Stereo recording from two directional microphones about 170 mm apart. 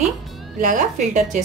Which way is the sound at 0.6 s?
45° right (ahead or behind).